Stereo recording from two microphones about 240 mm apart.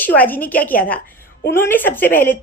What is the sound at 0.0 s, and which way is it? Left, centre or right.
Speech, centre.